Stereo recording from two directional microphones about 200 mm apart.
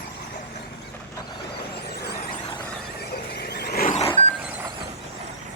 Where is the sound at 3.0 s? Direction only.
50° left (ahead or behind).